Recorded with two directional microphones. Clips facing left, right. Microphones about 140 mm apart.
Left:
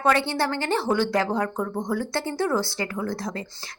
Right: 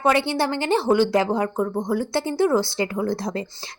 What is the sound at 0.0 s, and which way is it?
A woman's voice, 15° right (ahead or behind).